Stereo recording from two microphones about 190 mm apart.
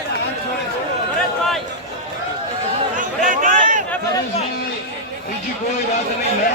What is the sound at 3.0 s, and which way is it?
Chatter, 40° right (ahead or behind).